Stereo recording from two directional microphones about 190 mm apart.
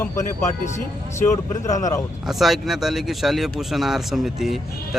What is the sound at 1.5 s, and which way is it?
Speech, 40° left (ahead or behind).